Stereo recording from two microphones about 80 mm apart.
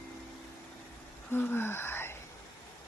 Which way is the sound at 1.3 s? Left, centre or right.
Left.